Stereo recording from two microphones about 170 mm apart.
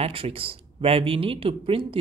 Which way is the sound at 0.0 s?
35° right (ahead or behind).